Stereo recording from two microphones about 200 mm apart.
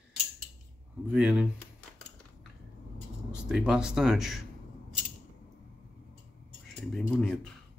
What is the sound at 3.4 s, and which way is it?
Speech, 5° right (ahead or behind).